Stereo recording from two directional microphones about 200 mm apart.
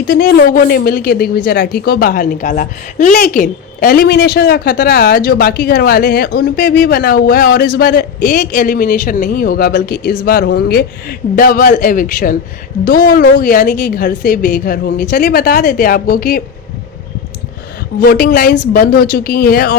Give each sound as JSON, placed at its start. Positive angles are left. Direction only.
{"t": 0.1, "sound": "a woman's voice", "side_deg": 50}
{"t": 18.0, "sound": "a woman's voice", "side_deg": 45}